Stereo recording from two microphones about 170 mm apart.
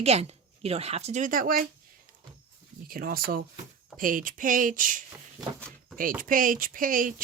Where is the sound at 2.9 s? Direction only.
60° right (ahead or behind).